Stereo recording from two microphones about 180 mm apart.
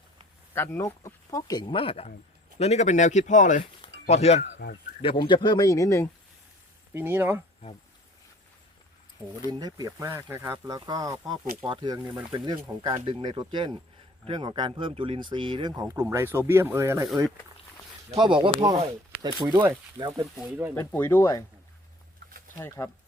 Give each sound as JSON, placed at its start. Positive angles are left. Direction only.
{"t": 0.5, "sound": "speech", "side_deg": 15}
{"t": 5.0, "sound": "speech", "side_deg": 25}
{"t": 6.9, "sound": "speech", "side_deg": -10}
{"t": 9.5, "sound": "speech", "side_deg": -20}
{"t": 18.1, "sound": "speech", "side_deg": -25}
{"t": 20.7, "sound": "speech", "side_deg": 10}
{"t": 22.5, "sound": "speech", "side_deg": 15}